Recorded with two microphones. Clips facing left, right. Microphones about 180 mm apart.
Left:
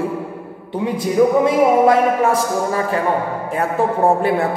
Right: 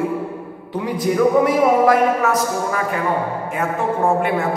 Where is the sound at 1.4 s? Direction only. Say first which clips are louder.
Left 2 dB; 25° left (ahead or behind).